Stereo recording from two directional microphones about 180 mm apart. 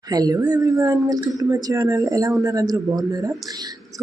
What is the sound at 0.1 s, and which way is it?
A woman's voice, 20° right (ahead or behind).